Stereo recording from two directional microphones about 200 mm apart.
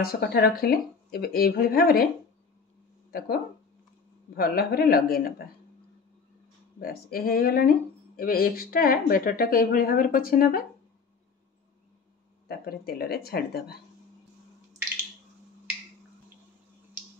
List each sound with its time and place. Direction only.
0.0 s speech: 50° left (ahead or behind)
3.1 s speech: 45° left (ahead or behind)
4.4 s speech: 50° left (ahead or behind)
6.8 s speech: 45° left (ahead or behind)
12.4 s speech: 50° left (ahead or behind)